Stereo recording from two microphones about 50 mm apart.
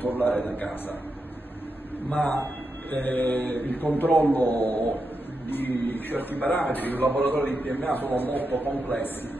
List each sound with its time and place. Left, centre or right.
0.0 s a man's voice: left
2.0 s a man's voice: left